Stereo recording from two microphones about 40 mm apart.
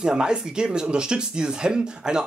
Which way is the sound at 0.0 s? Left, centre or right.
Right.